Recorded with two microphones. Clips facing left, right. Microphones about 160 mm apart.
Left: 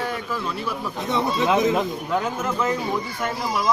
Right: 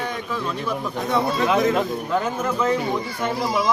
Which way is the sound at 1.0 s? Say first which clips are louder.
Right 1 dB; 20° left (ahead or behind).